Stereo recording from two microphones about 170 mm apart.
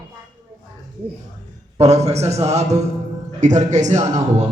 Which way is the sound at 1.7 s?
40° right (ahead or behind).